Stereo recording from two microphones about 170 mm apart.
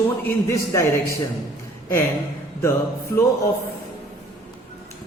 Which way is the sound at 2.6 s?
15° left (ahead or behind).